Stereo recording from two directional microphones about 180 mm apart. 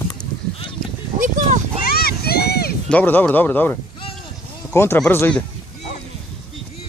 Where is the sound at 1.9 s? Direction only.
60° left (ahead or behind).